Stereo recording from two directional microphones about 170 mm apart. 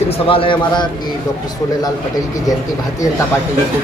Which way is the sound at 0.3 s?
30° left (ahead or behind).